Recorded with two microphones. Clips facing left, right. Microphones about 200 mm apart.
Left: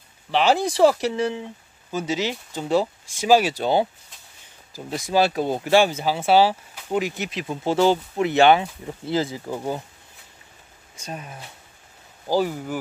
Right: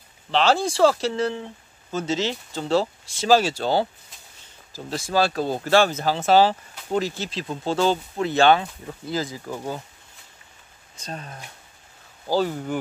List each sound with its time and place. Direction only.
0.3 s speech: 15° left (ahead or behind)
11.0 s speech: 10° left (ahead or behind)